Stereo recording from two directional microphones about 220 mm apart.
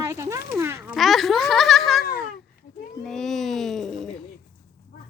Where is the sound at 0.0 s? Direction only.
10° right (ahead or behind).